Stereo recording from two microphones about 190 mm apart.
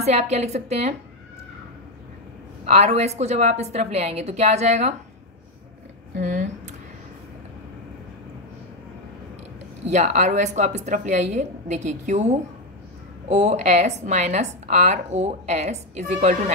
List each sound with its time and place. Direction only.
0.0 s a woman's voice: 35° right (ahead or behind)
2.6 s a woman's voice: 35° right (ahead or behind)
6.1 s a sound: 40° right (ahead or behind)
9.8 s a woman's voice: 35° right (ahead or behind)